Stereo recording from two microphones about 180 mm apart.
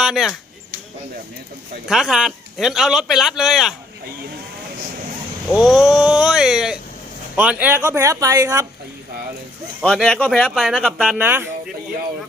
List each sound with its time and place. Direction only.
0.0 s speech: centre (ahead or behind)
1.9 s speech: centre (ahead or behind)
5.5 s a woman's voice: centre (ahead or behind); by 8.6 s 20° right (ahead or behind)
9.8 s speech: 5° left (ahead or behind)
11.2 s a woman's voice: 10° right (ahead or behind)